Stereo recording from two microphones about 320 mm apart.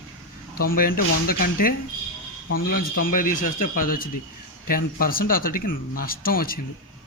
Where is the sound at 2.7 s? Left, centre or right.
Left.